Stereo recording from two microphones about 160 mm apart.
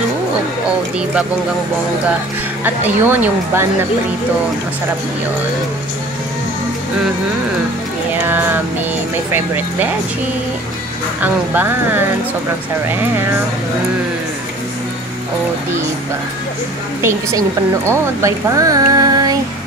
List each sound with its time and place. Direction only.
2.6 s speech: 15° right (ahead or behind)
8.3 s speech: 15° right (ahead or behind)
11.1 s speech: 10° right (ahead or behind)
17.8 s speech: 20° right (ahead or behind)